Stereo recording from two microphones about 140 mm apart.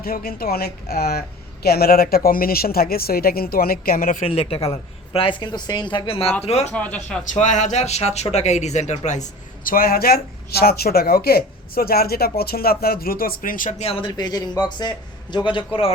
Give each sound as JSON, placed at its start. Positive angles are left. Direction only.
{"t": 0.0, "sound": "speech", "side_deg": 90}
{"t": 4.2, "sound": "a woman's voice", "side_deg": 45}
{"t": 6.7, "sound": "speech", "side_deg": 10}
{"t": 7.3, "sound": "speech", "side_deg": 60}
{"t": 14.1, "sound": "a woman's voice", "side_deg": 30}